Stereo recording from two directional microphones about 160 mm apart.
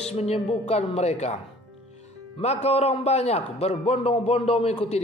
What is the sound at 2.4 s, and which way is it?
A man's voice, 45° left (ahead or behind).